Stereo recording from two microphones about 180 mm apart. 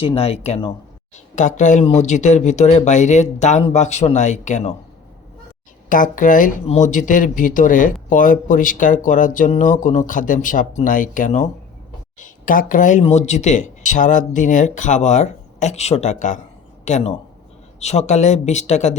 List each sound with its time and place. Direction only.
0.0 s speech: 35° left (ahead or behind)
5.9 s speech: 45° left (ahead or behind)